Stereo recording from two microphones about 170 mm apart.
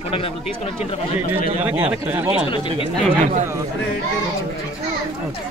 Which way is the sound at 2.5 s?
30° left (ahead or behind).